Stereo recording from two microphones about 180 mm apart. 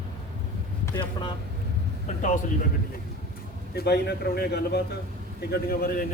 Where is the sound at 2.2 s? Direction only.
45° left (ahead or behind).